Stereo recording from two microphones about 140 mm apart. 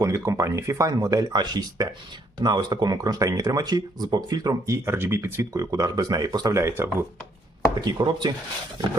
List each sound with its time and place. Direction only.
0.0 s speech: 20° right (ahead or behind)
7.8 s speech: 30° right (ahead or behind)